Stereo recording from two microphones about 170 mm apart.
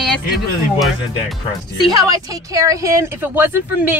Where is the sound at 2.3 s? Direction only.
20° right (ahead or behind).